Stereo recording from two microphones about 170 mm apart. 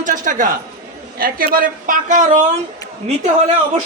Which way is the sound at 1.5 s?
55° right (ahead or behind).